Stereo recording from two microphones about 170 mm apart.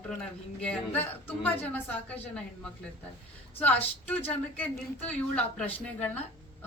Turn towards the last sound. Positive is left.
turn(degrees=10)  # may be behind; listen again after turning